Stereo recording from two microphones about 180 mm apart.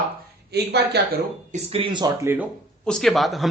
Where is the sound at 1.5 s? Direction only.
35° right (ahead or behind).